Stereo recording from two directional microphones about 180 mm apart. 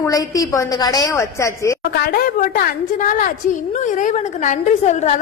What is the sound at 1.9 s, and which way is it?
A woman's voice, 55° left (ahead or behind).